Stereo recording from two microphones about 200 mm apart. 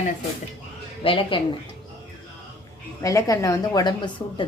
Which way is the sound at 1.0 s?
25° left (ahead or behind).